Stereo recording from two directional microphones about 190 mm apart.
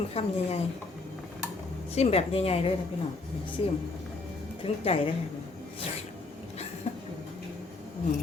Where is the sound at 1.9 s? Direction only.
35° left (ahead or behind).